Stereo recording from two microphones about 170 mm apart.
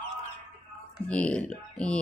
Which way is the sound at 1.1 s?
5° left (ahead or behind).